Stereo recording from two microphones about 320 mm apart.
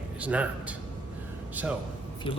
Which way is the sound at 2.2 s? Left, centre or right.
Centre.